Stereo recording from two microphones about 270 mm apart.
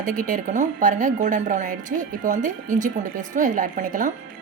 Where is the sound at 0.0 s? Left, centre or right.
Right.